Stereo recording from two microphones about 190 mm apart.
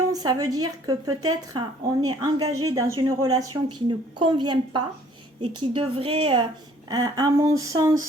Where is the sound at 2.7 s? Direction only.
15° right (ahead or behind).